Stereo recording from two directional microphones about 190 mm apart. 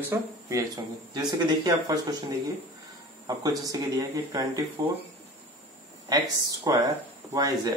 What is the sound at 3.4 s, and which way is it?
Speech, 20° right (ahead or behind).